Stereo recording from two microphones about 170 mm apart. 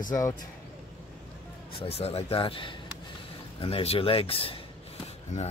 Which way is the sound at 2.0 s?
35° left (ahead or behind).